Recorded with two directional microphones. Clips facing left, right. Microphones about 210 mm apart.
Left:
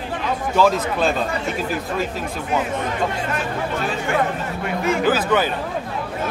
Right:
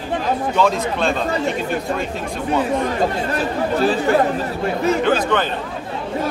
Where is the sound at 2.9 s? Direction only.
35° right (ahead or behind).